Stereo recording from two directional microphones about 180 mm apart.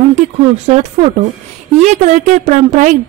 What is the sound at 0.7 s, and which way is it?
A woman's voice, 40° right (ahead or behind).